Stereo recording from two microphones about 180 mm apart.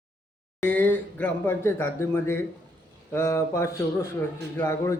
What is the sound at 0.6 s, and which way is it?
A man's voice, 10° left (ahead or behind).